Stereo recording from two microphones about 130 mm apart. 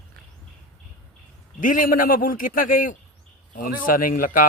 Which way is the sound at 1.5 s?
90° left.